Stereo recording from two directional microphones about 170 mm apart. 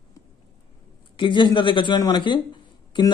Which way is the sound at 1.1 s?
25° left (ahead or behind).